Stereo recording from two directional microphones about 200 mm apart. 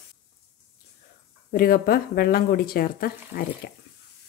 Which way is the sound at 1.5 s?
45° left (ahead or behind).